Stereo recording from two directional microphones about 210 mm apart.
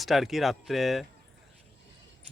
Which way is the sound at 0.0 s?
Centre (ahead or behind).